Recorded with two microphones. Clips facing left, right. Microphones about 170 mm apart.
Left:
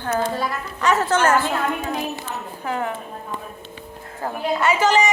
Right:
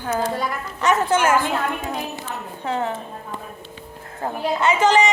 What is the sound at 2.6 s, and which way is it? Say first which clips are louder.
Speech: right 1 dB; 25° right (ahead or behind).